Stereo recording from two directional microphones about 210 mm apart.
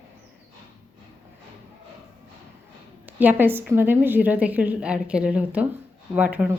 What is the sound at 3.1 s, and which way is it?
Speech, 10° right (ahead or behind).